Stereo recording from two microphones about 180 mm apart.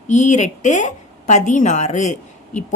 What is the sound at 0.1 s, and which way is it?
A woman's voice, 40° left (ahead or behind).